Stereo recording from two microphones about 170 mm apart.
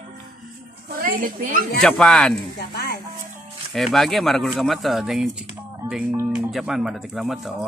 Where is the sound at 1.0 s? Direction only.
55° right (ahead or behind).